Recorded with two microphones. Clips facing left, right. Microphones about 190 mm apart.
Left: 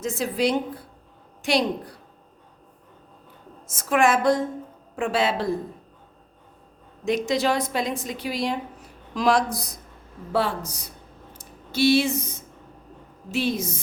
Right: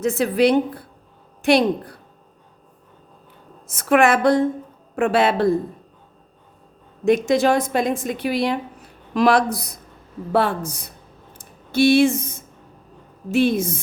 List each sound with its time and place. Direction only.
0.0 s a woman's voice: 65° right (ahead or behind)
3.7 s a woman's voice: 65° right (ahead or behind)
7.0 s a woman's voice: 55° right (ahead or behind)
11.3 s a sound: 55° right (ahead or behind)
13.3 s a woman's voice: 55° right (ahead or behind)